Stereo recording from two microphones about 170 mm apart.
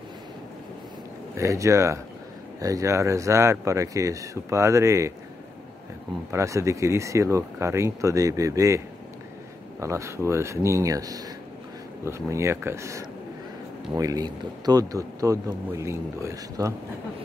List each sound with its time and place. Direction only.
1.3 s speech: 20° right (ahead or behind)
6.3 s speech: 20° right (ahead or behind)